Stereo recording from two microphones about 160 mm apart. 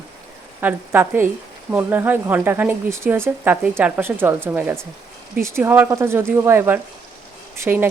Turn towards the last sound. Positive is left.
turn(degrees=-10)  # may be behind; listen again after turning